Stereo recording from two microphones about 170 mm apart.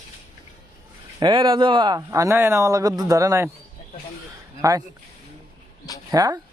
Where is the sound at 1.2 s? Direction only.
30° right (ahead or behind).